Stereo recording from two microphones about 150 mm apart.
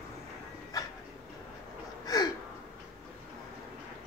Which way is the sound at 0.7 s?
25° left (ahead or behind).